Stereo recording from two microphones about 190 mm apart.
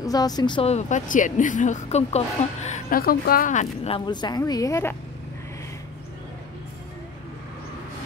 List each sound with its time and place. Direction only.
0.0 s speech: 20° left (ahead or behind)